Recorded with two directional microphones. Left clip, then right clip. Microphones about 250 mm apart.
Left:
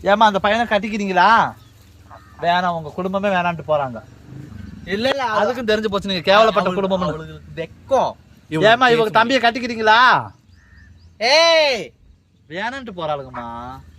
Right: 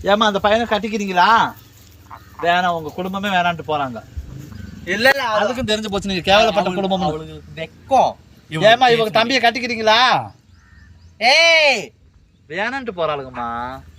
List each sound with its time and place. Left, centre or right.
0.0 s speech: centre
5.1 s a man's voice: centre